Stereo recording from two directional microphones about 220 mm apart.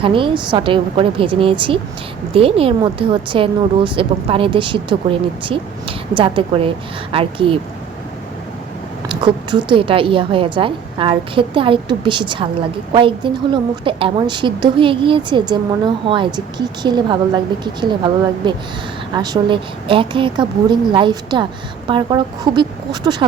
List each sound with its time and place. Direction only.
0.0 s a woman's voice: 20° right (ahead or behind)
6.1 s a woman's voice: 25° right (ahead or behind)
9.0 s a woman's voice: 20° right (ahead or behind)